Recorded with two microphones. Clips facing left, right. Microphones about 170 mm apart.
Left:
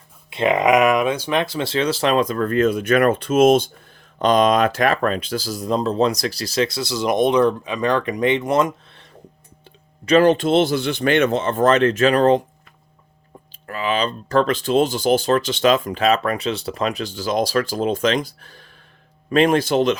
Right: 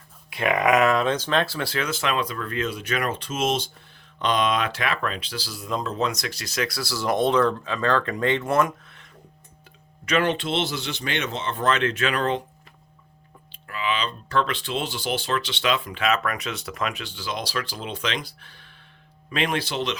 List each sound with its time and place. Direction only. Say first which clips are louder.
0.3 s speech: left 4 dB; 25° left (ahead or behind); by 3.7 s 55° left (ahead or behind)
4.2 s speech: left 8 dB; 40° left (ahead or behind); by 9.0 s 20° left (ahead or behind)
10.1 s speech: left 9 dB; 35° left (ahead or behind)
13.5 s speech: left 5 dB; 45° left (ahead or behind)